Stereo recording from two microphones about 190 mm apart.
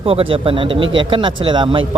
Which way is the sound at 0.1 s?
30° right (ahead or behind).